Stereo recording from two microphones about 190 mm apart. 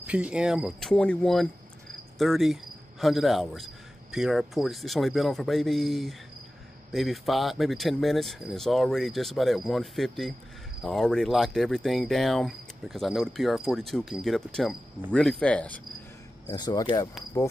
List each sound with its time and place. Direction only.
0.0 s speech: 5° right (ahead or behind)
16.4 s speech: 20° left (ahead or behind)
17.3 s insect: 15° left (ahead or behind)